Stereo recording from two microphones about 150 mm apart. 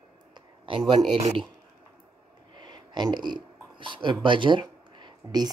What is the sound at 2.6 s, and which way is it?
Speech, 30° right (ahead or behind).